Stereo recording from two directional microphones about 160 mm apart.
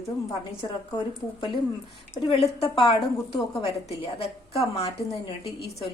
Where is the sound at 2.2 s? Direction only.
35° left (ahead or behind).